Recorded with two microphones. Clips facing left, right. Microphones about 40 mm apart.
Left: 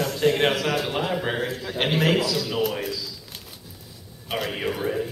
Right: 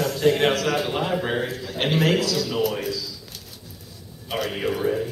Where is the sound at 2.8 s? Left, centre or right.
Centre.